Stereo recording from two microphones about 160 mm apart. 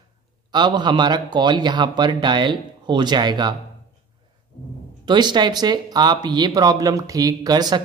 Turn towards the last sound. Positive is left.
turn(degrees=-25)  # may be behind; listen again after turning